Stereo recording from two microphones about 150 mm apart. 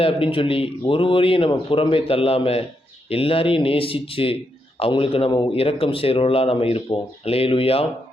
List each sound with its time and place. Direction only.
0.0 s speech: 35° left (ahead or behind)